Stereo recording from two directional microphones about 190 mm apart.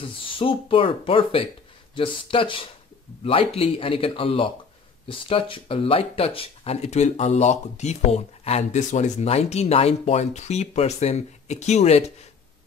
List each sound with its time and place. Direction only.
0.0 s speech: 30° left (ahead or behind)